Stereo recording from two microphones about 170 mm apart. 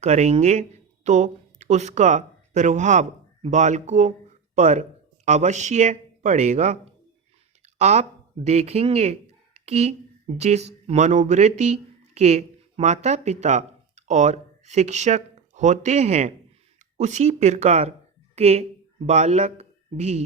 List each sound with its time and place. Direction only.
0.0 s speech: 40° right (ahead or behind)
7.6 s a sound: 40° right (ahead or behind)
8.4 s a woman's voice: 40° right (ahead or behind)